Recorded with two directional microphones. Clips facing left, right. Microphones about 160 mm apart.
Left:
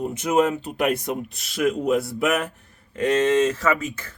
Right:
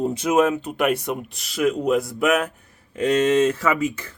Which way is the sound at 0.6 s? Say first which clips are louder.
Right 1 dB; centre (ahead or behind).